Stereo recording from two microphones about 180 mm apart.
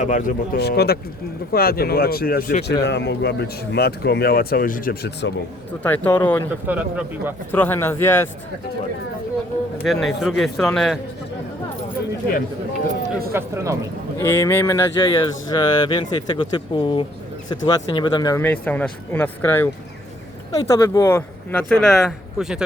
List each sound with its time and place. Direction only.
0.0 s speech: 45° left (ahead or behind)
0.5 s speech: 65° left (ahead or behind)
2.8 s speech: 75° left (ahead or behind)
5.8 s speech: 10° left (ahead or behind)
6.7 s speech: 10° right (ahead or behind)
7.5 s speech: 10° left (ahead or behind)
9.8 s speech: centre (ahead or behind)
13.3 s speech: 15° right (ahead or behind)
14.2 s speech: 15° left (ahead or behind)
18.4 s speech: 10° left (ahead or behind)